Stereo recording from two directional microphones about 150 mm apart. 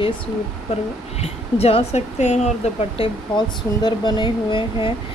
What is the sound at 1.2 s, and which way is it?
Speech, 45° left (ahead or behind).